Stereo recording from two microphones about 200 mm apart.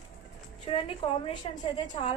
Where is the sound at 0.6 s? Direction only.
25° left (ahead or behind).